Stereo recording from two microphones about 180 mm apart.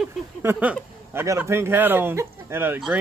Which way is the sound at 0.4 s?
10° right (ahead or behind).